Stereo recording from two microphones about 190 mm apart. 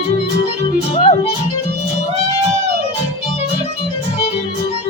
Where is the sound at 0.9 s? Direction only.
30° left (ahead or behind).